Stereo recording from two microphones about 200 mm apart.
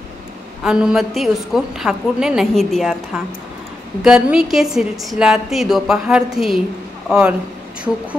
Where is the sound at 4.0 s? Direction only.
5° right (ahead or behind).